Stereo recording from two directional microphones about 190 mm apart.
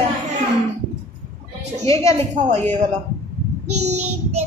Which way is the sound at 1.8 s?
30° right (ahead or behind).